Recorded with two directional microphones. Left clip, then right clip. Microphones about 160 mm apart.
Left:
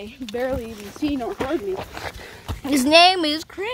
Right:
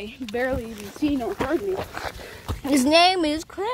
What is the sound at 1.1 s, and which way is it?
Speech, 35° right (ahead or behind).